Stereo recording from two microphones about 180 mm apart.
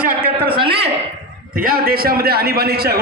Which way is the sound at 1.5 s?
55° right (ahead or behind).